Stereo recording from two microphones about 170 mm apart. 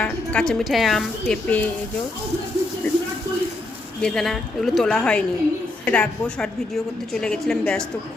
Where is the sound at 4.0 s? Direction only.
5° left (ahead or behind).